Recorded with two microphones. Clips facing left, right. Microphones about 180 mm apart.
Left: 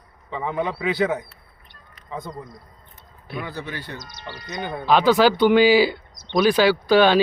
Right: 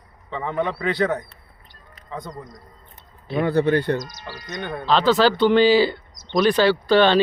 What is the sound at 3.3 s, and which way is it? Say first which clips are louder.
Speech: right 13 dB; 60° right (ahead or behind).